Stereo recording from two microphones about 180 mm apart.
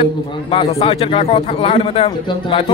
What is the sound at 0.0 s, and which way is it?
A man's voice, 30° left (ahead or behind).